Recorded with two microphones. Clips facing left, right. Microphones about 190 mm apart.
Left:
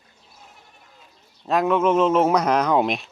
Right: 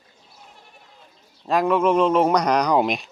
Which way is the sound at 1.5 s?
Centre (ahead or behind).